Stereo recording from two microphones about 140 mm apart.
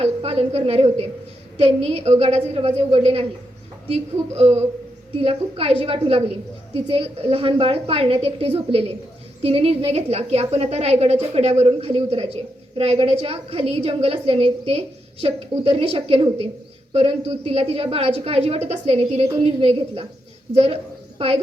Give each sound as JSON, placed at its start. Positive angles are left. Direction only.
{"t": 0.0, "sound": "a woman's voice", "side_deg": -45}
{"t": 4.4, "sound": "a woman's voice", "side_deg": -50}